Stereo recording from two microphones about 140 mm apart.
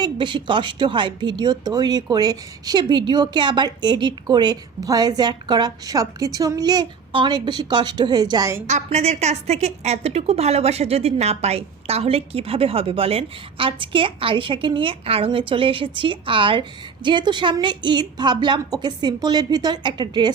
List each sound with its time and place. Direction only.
0.0 s a woman's voice: 35° right (ahead or behind)
8.6 s a woman's voice: 55° right (ahead or behind); by 20.3 s 30° right (ahead or behind)